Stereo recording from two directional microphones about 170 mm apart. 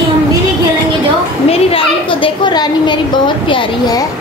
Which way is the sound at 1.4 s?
35° left (ahead or behind).